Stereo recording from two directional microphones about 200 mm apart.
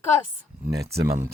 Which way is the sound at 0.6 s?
15° right (ahead or behind).